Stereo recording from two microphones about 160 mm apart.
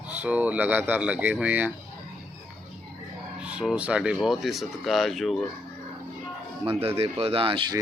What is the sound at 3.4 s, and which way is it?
Speech, 5° right (ahead or behind).